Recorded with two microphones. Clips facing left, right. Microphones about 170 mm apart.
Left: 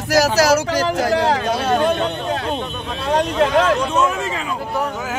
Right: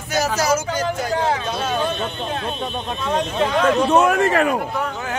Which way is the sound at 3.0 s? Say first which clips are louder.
Left 4 dB; 70° left (ahead or behind).